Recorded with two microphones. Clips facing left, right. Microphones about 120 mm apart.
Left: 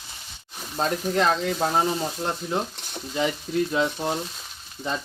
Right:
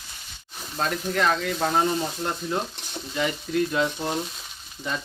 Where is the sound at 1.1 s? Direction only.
25° left (ahead or behind).